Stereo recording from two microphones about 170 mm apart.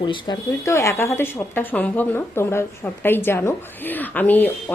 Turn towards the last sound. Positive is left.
turn(degrees=10)  # may be behind; listen again after turning